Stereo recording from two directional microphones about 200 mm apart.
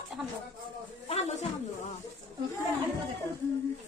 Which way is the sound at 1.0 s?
30° left (ahead or behind).